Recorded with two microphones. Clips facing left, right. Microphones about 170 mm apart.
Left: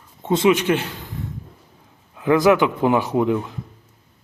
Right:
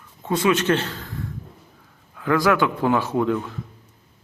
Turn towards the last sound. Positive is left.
turn(degrees=15)  # may be behind; listen again after turning